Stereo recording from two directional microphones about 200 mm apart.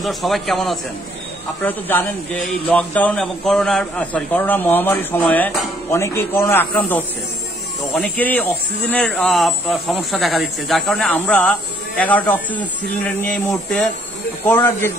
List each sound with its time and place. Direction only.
0.0 s speech: centre (ahead or behind)
14.5 s speech: 15° left (ahead or behind)